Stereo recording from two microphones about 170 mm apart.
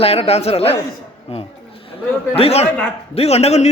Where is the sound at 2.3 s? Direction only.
35° left (ahead or behind).